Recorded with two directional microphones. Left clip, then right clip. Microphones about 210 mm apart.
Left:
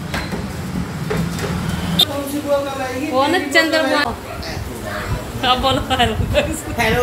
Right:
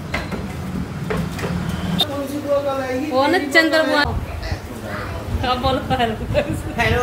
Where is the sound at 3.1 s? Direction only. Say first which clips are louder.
Even; 15° right (ahead or behind).